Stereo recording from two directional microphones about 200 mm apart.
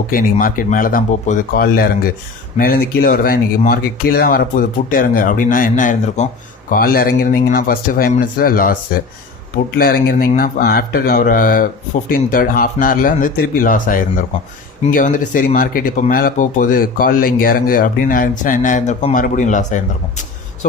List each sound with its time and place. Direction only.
0.1 s speech: 45° left (ahead or behind)